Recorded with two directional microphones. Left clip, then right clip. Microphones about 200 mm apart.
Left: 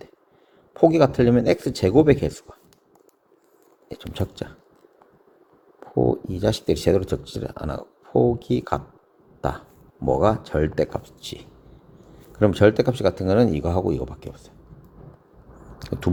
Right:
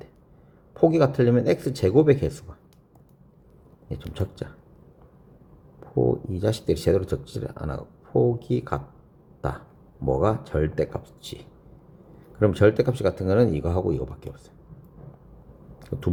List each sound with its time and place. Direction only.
0.7 s speech: 25° left (ahead or behind)
3.8 s speech: 25° left (ahead or behind)
5.8 s speech: 25° left (ahead or behind)
9.4 s burping: 25° left (ahead or behind)
10.1 s speech: 25° left (ahead or behind)
15.8 s speech: 20° left (ahead or behind)